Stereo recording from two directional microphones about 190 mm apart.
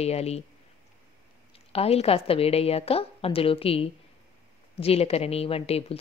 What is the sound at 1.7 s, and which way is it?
A woman's voice, 30° left (ahead or behind).